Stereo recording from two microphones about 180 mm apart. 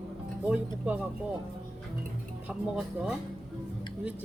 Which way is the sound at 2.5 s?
5° right (ahead or behind).